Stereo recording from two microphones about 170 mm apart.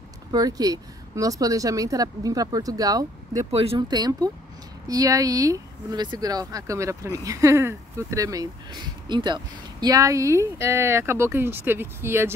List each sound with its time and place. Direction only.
0.3 s speech: 20° right (ahead or behind)
3.5 s speech: 30° right (ahead or behind); by 12.4 s 15° right (ahead or behind)